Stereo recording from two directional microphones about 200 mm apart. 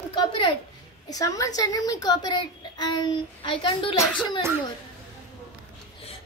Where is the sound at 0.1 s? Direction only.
25° left (ahead or behind).